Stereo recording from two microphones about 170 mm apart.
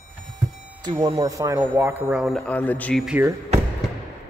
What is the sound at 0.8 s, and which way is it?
Speech, 25° right (ahead or behind).